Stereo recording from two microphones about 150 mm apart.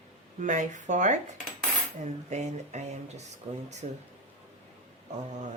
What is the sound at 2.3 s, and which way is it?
Speech, 50° right (ahead or behind).